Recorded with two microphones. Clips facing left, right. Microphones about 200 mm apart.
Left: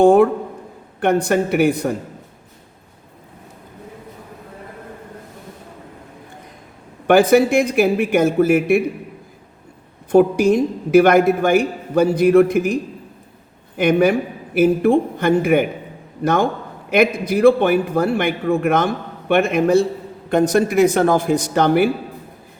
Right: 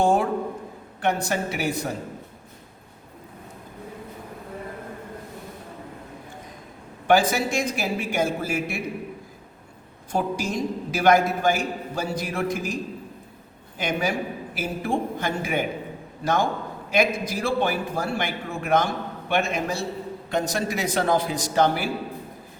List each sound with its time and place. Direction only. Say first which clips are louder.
0.0 s a man's voice: left 9 dB; 60° left (ahead or behind)
7.1 s a man's voice: left 8 dB; 60° left (ahead or behind)
10.1 s a man's voice: left 13 dB; 60° left (ahead or behind)
13.7 s a man's voice: left 11 dB; 60° left (ahead or behind)